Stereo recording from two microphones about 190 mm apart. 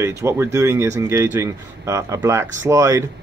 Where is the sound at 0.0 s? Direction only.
15° right (ahead or behind).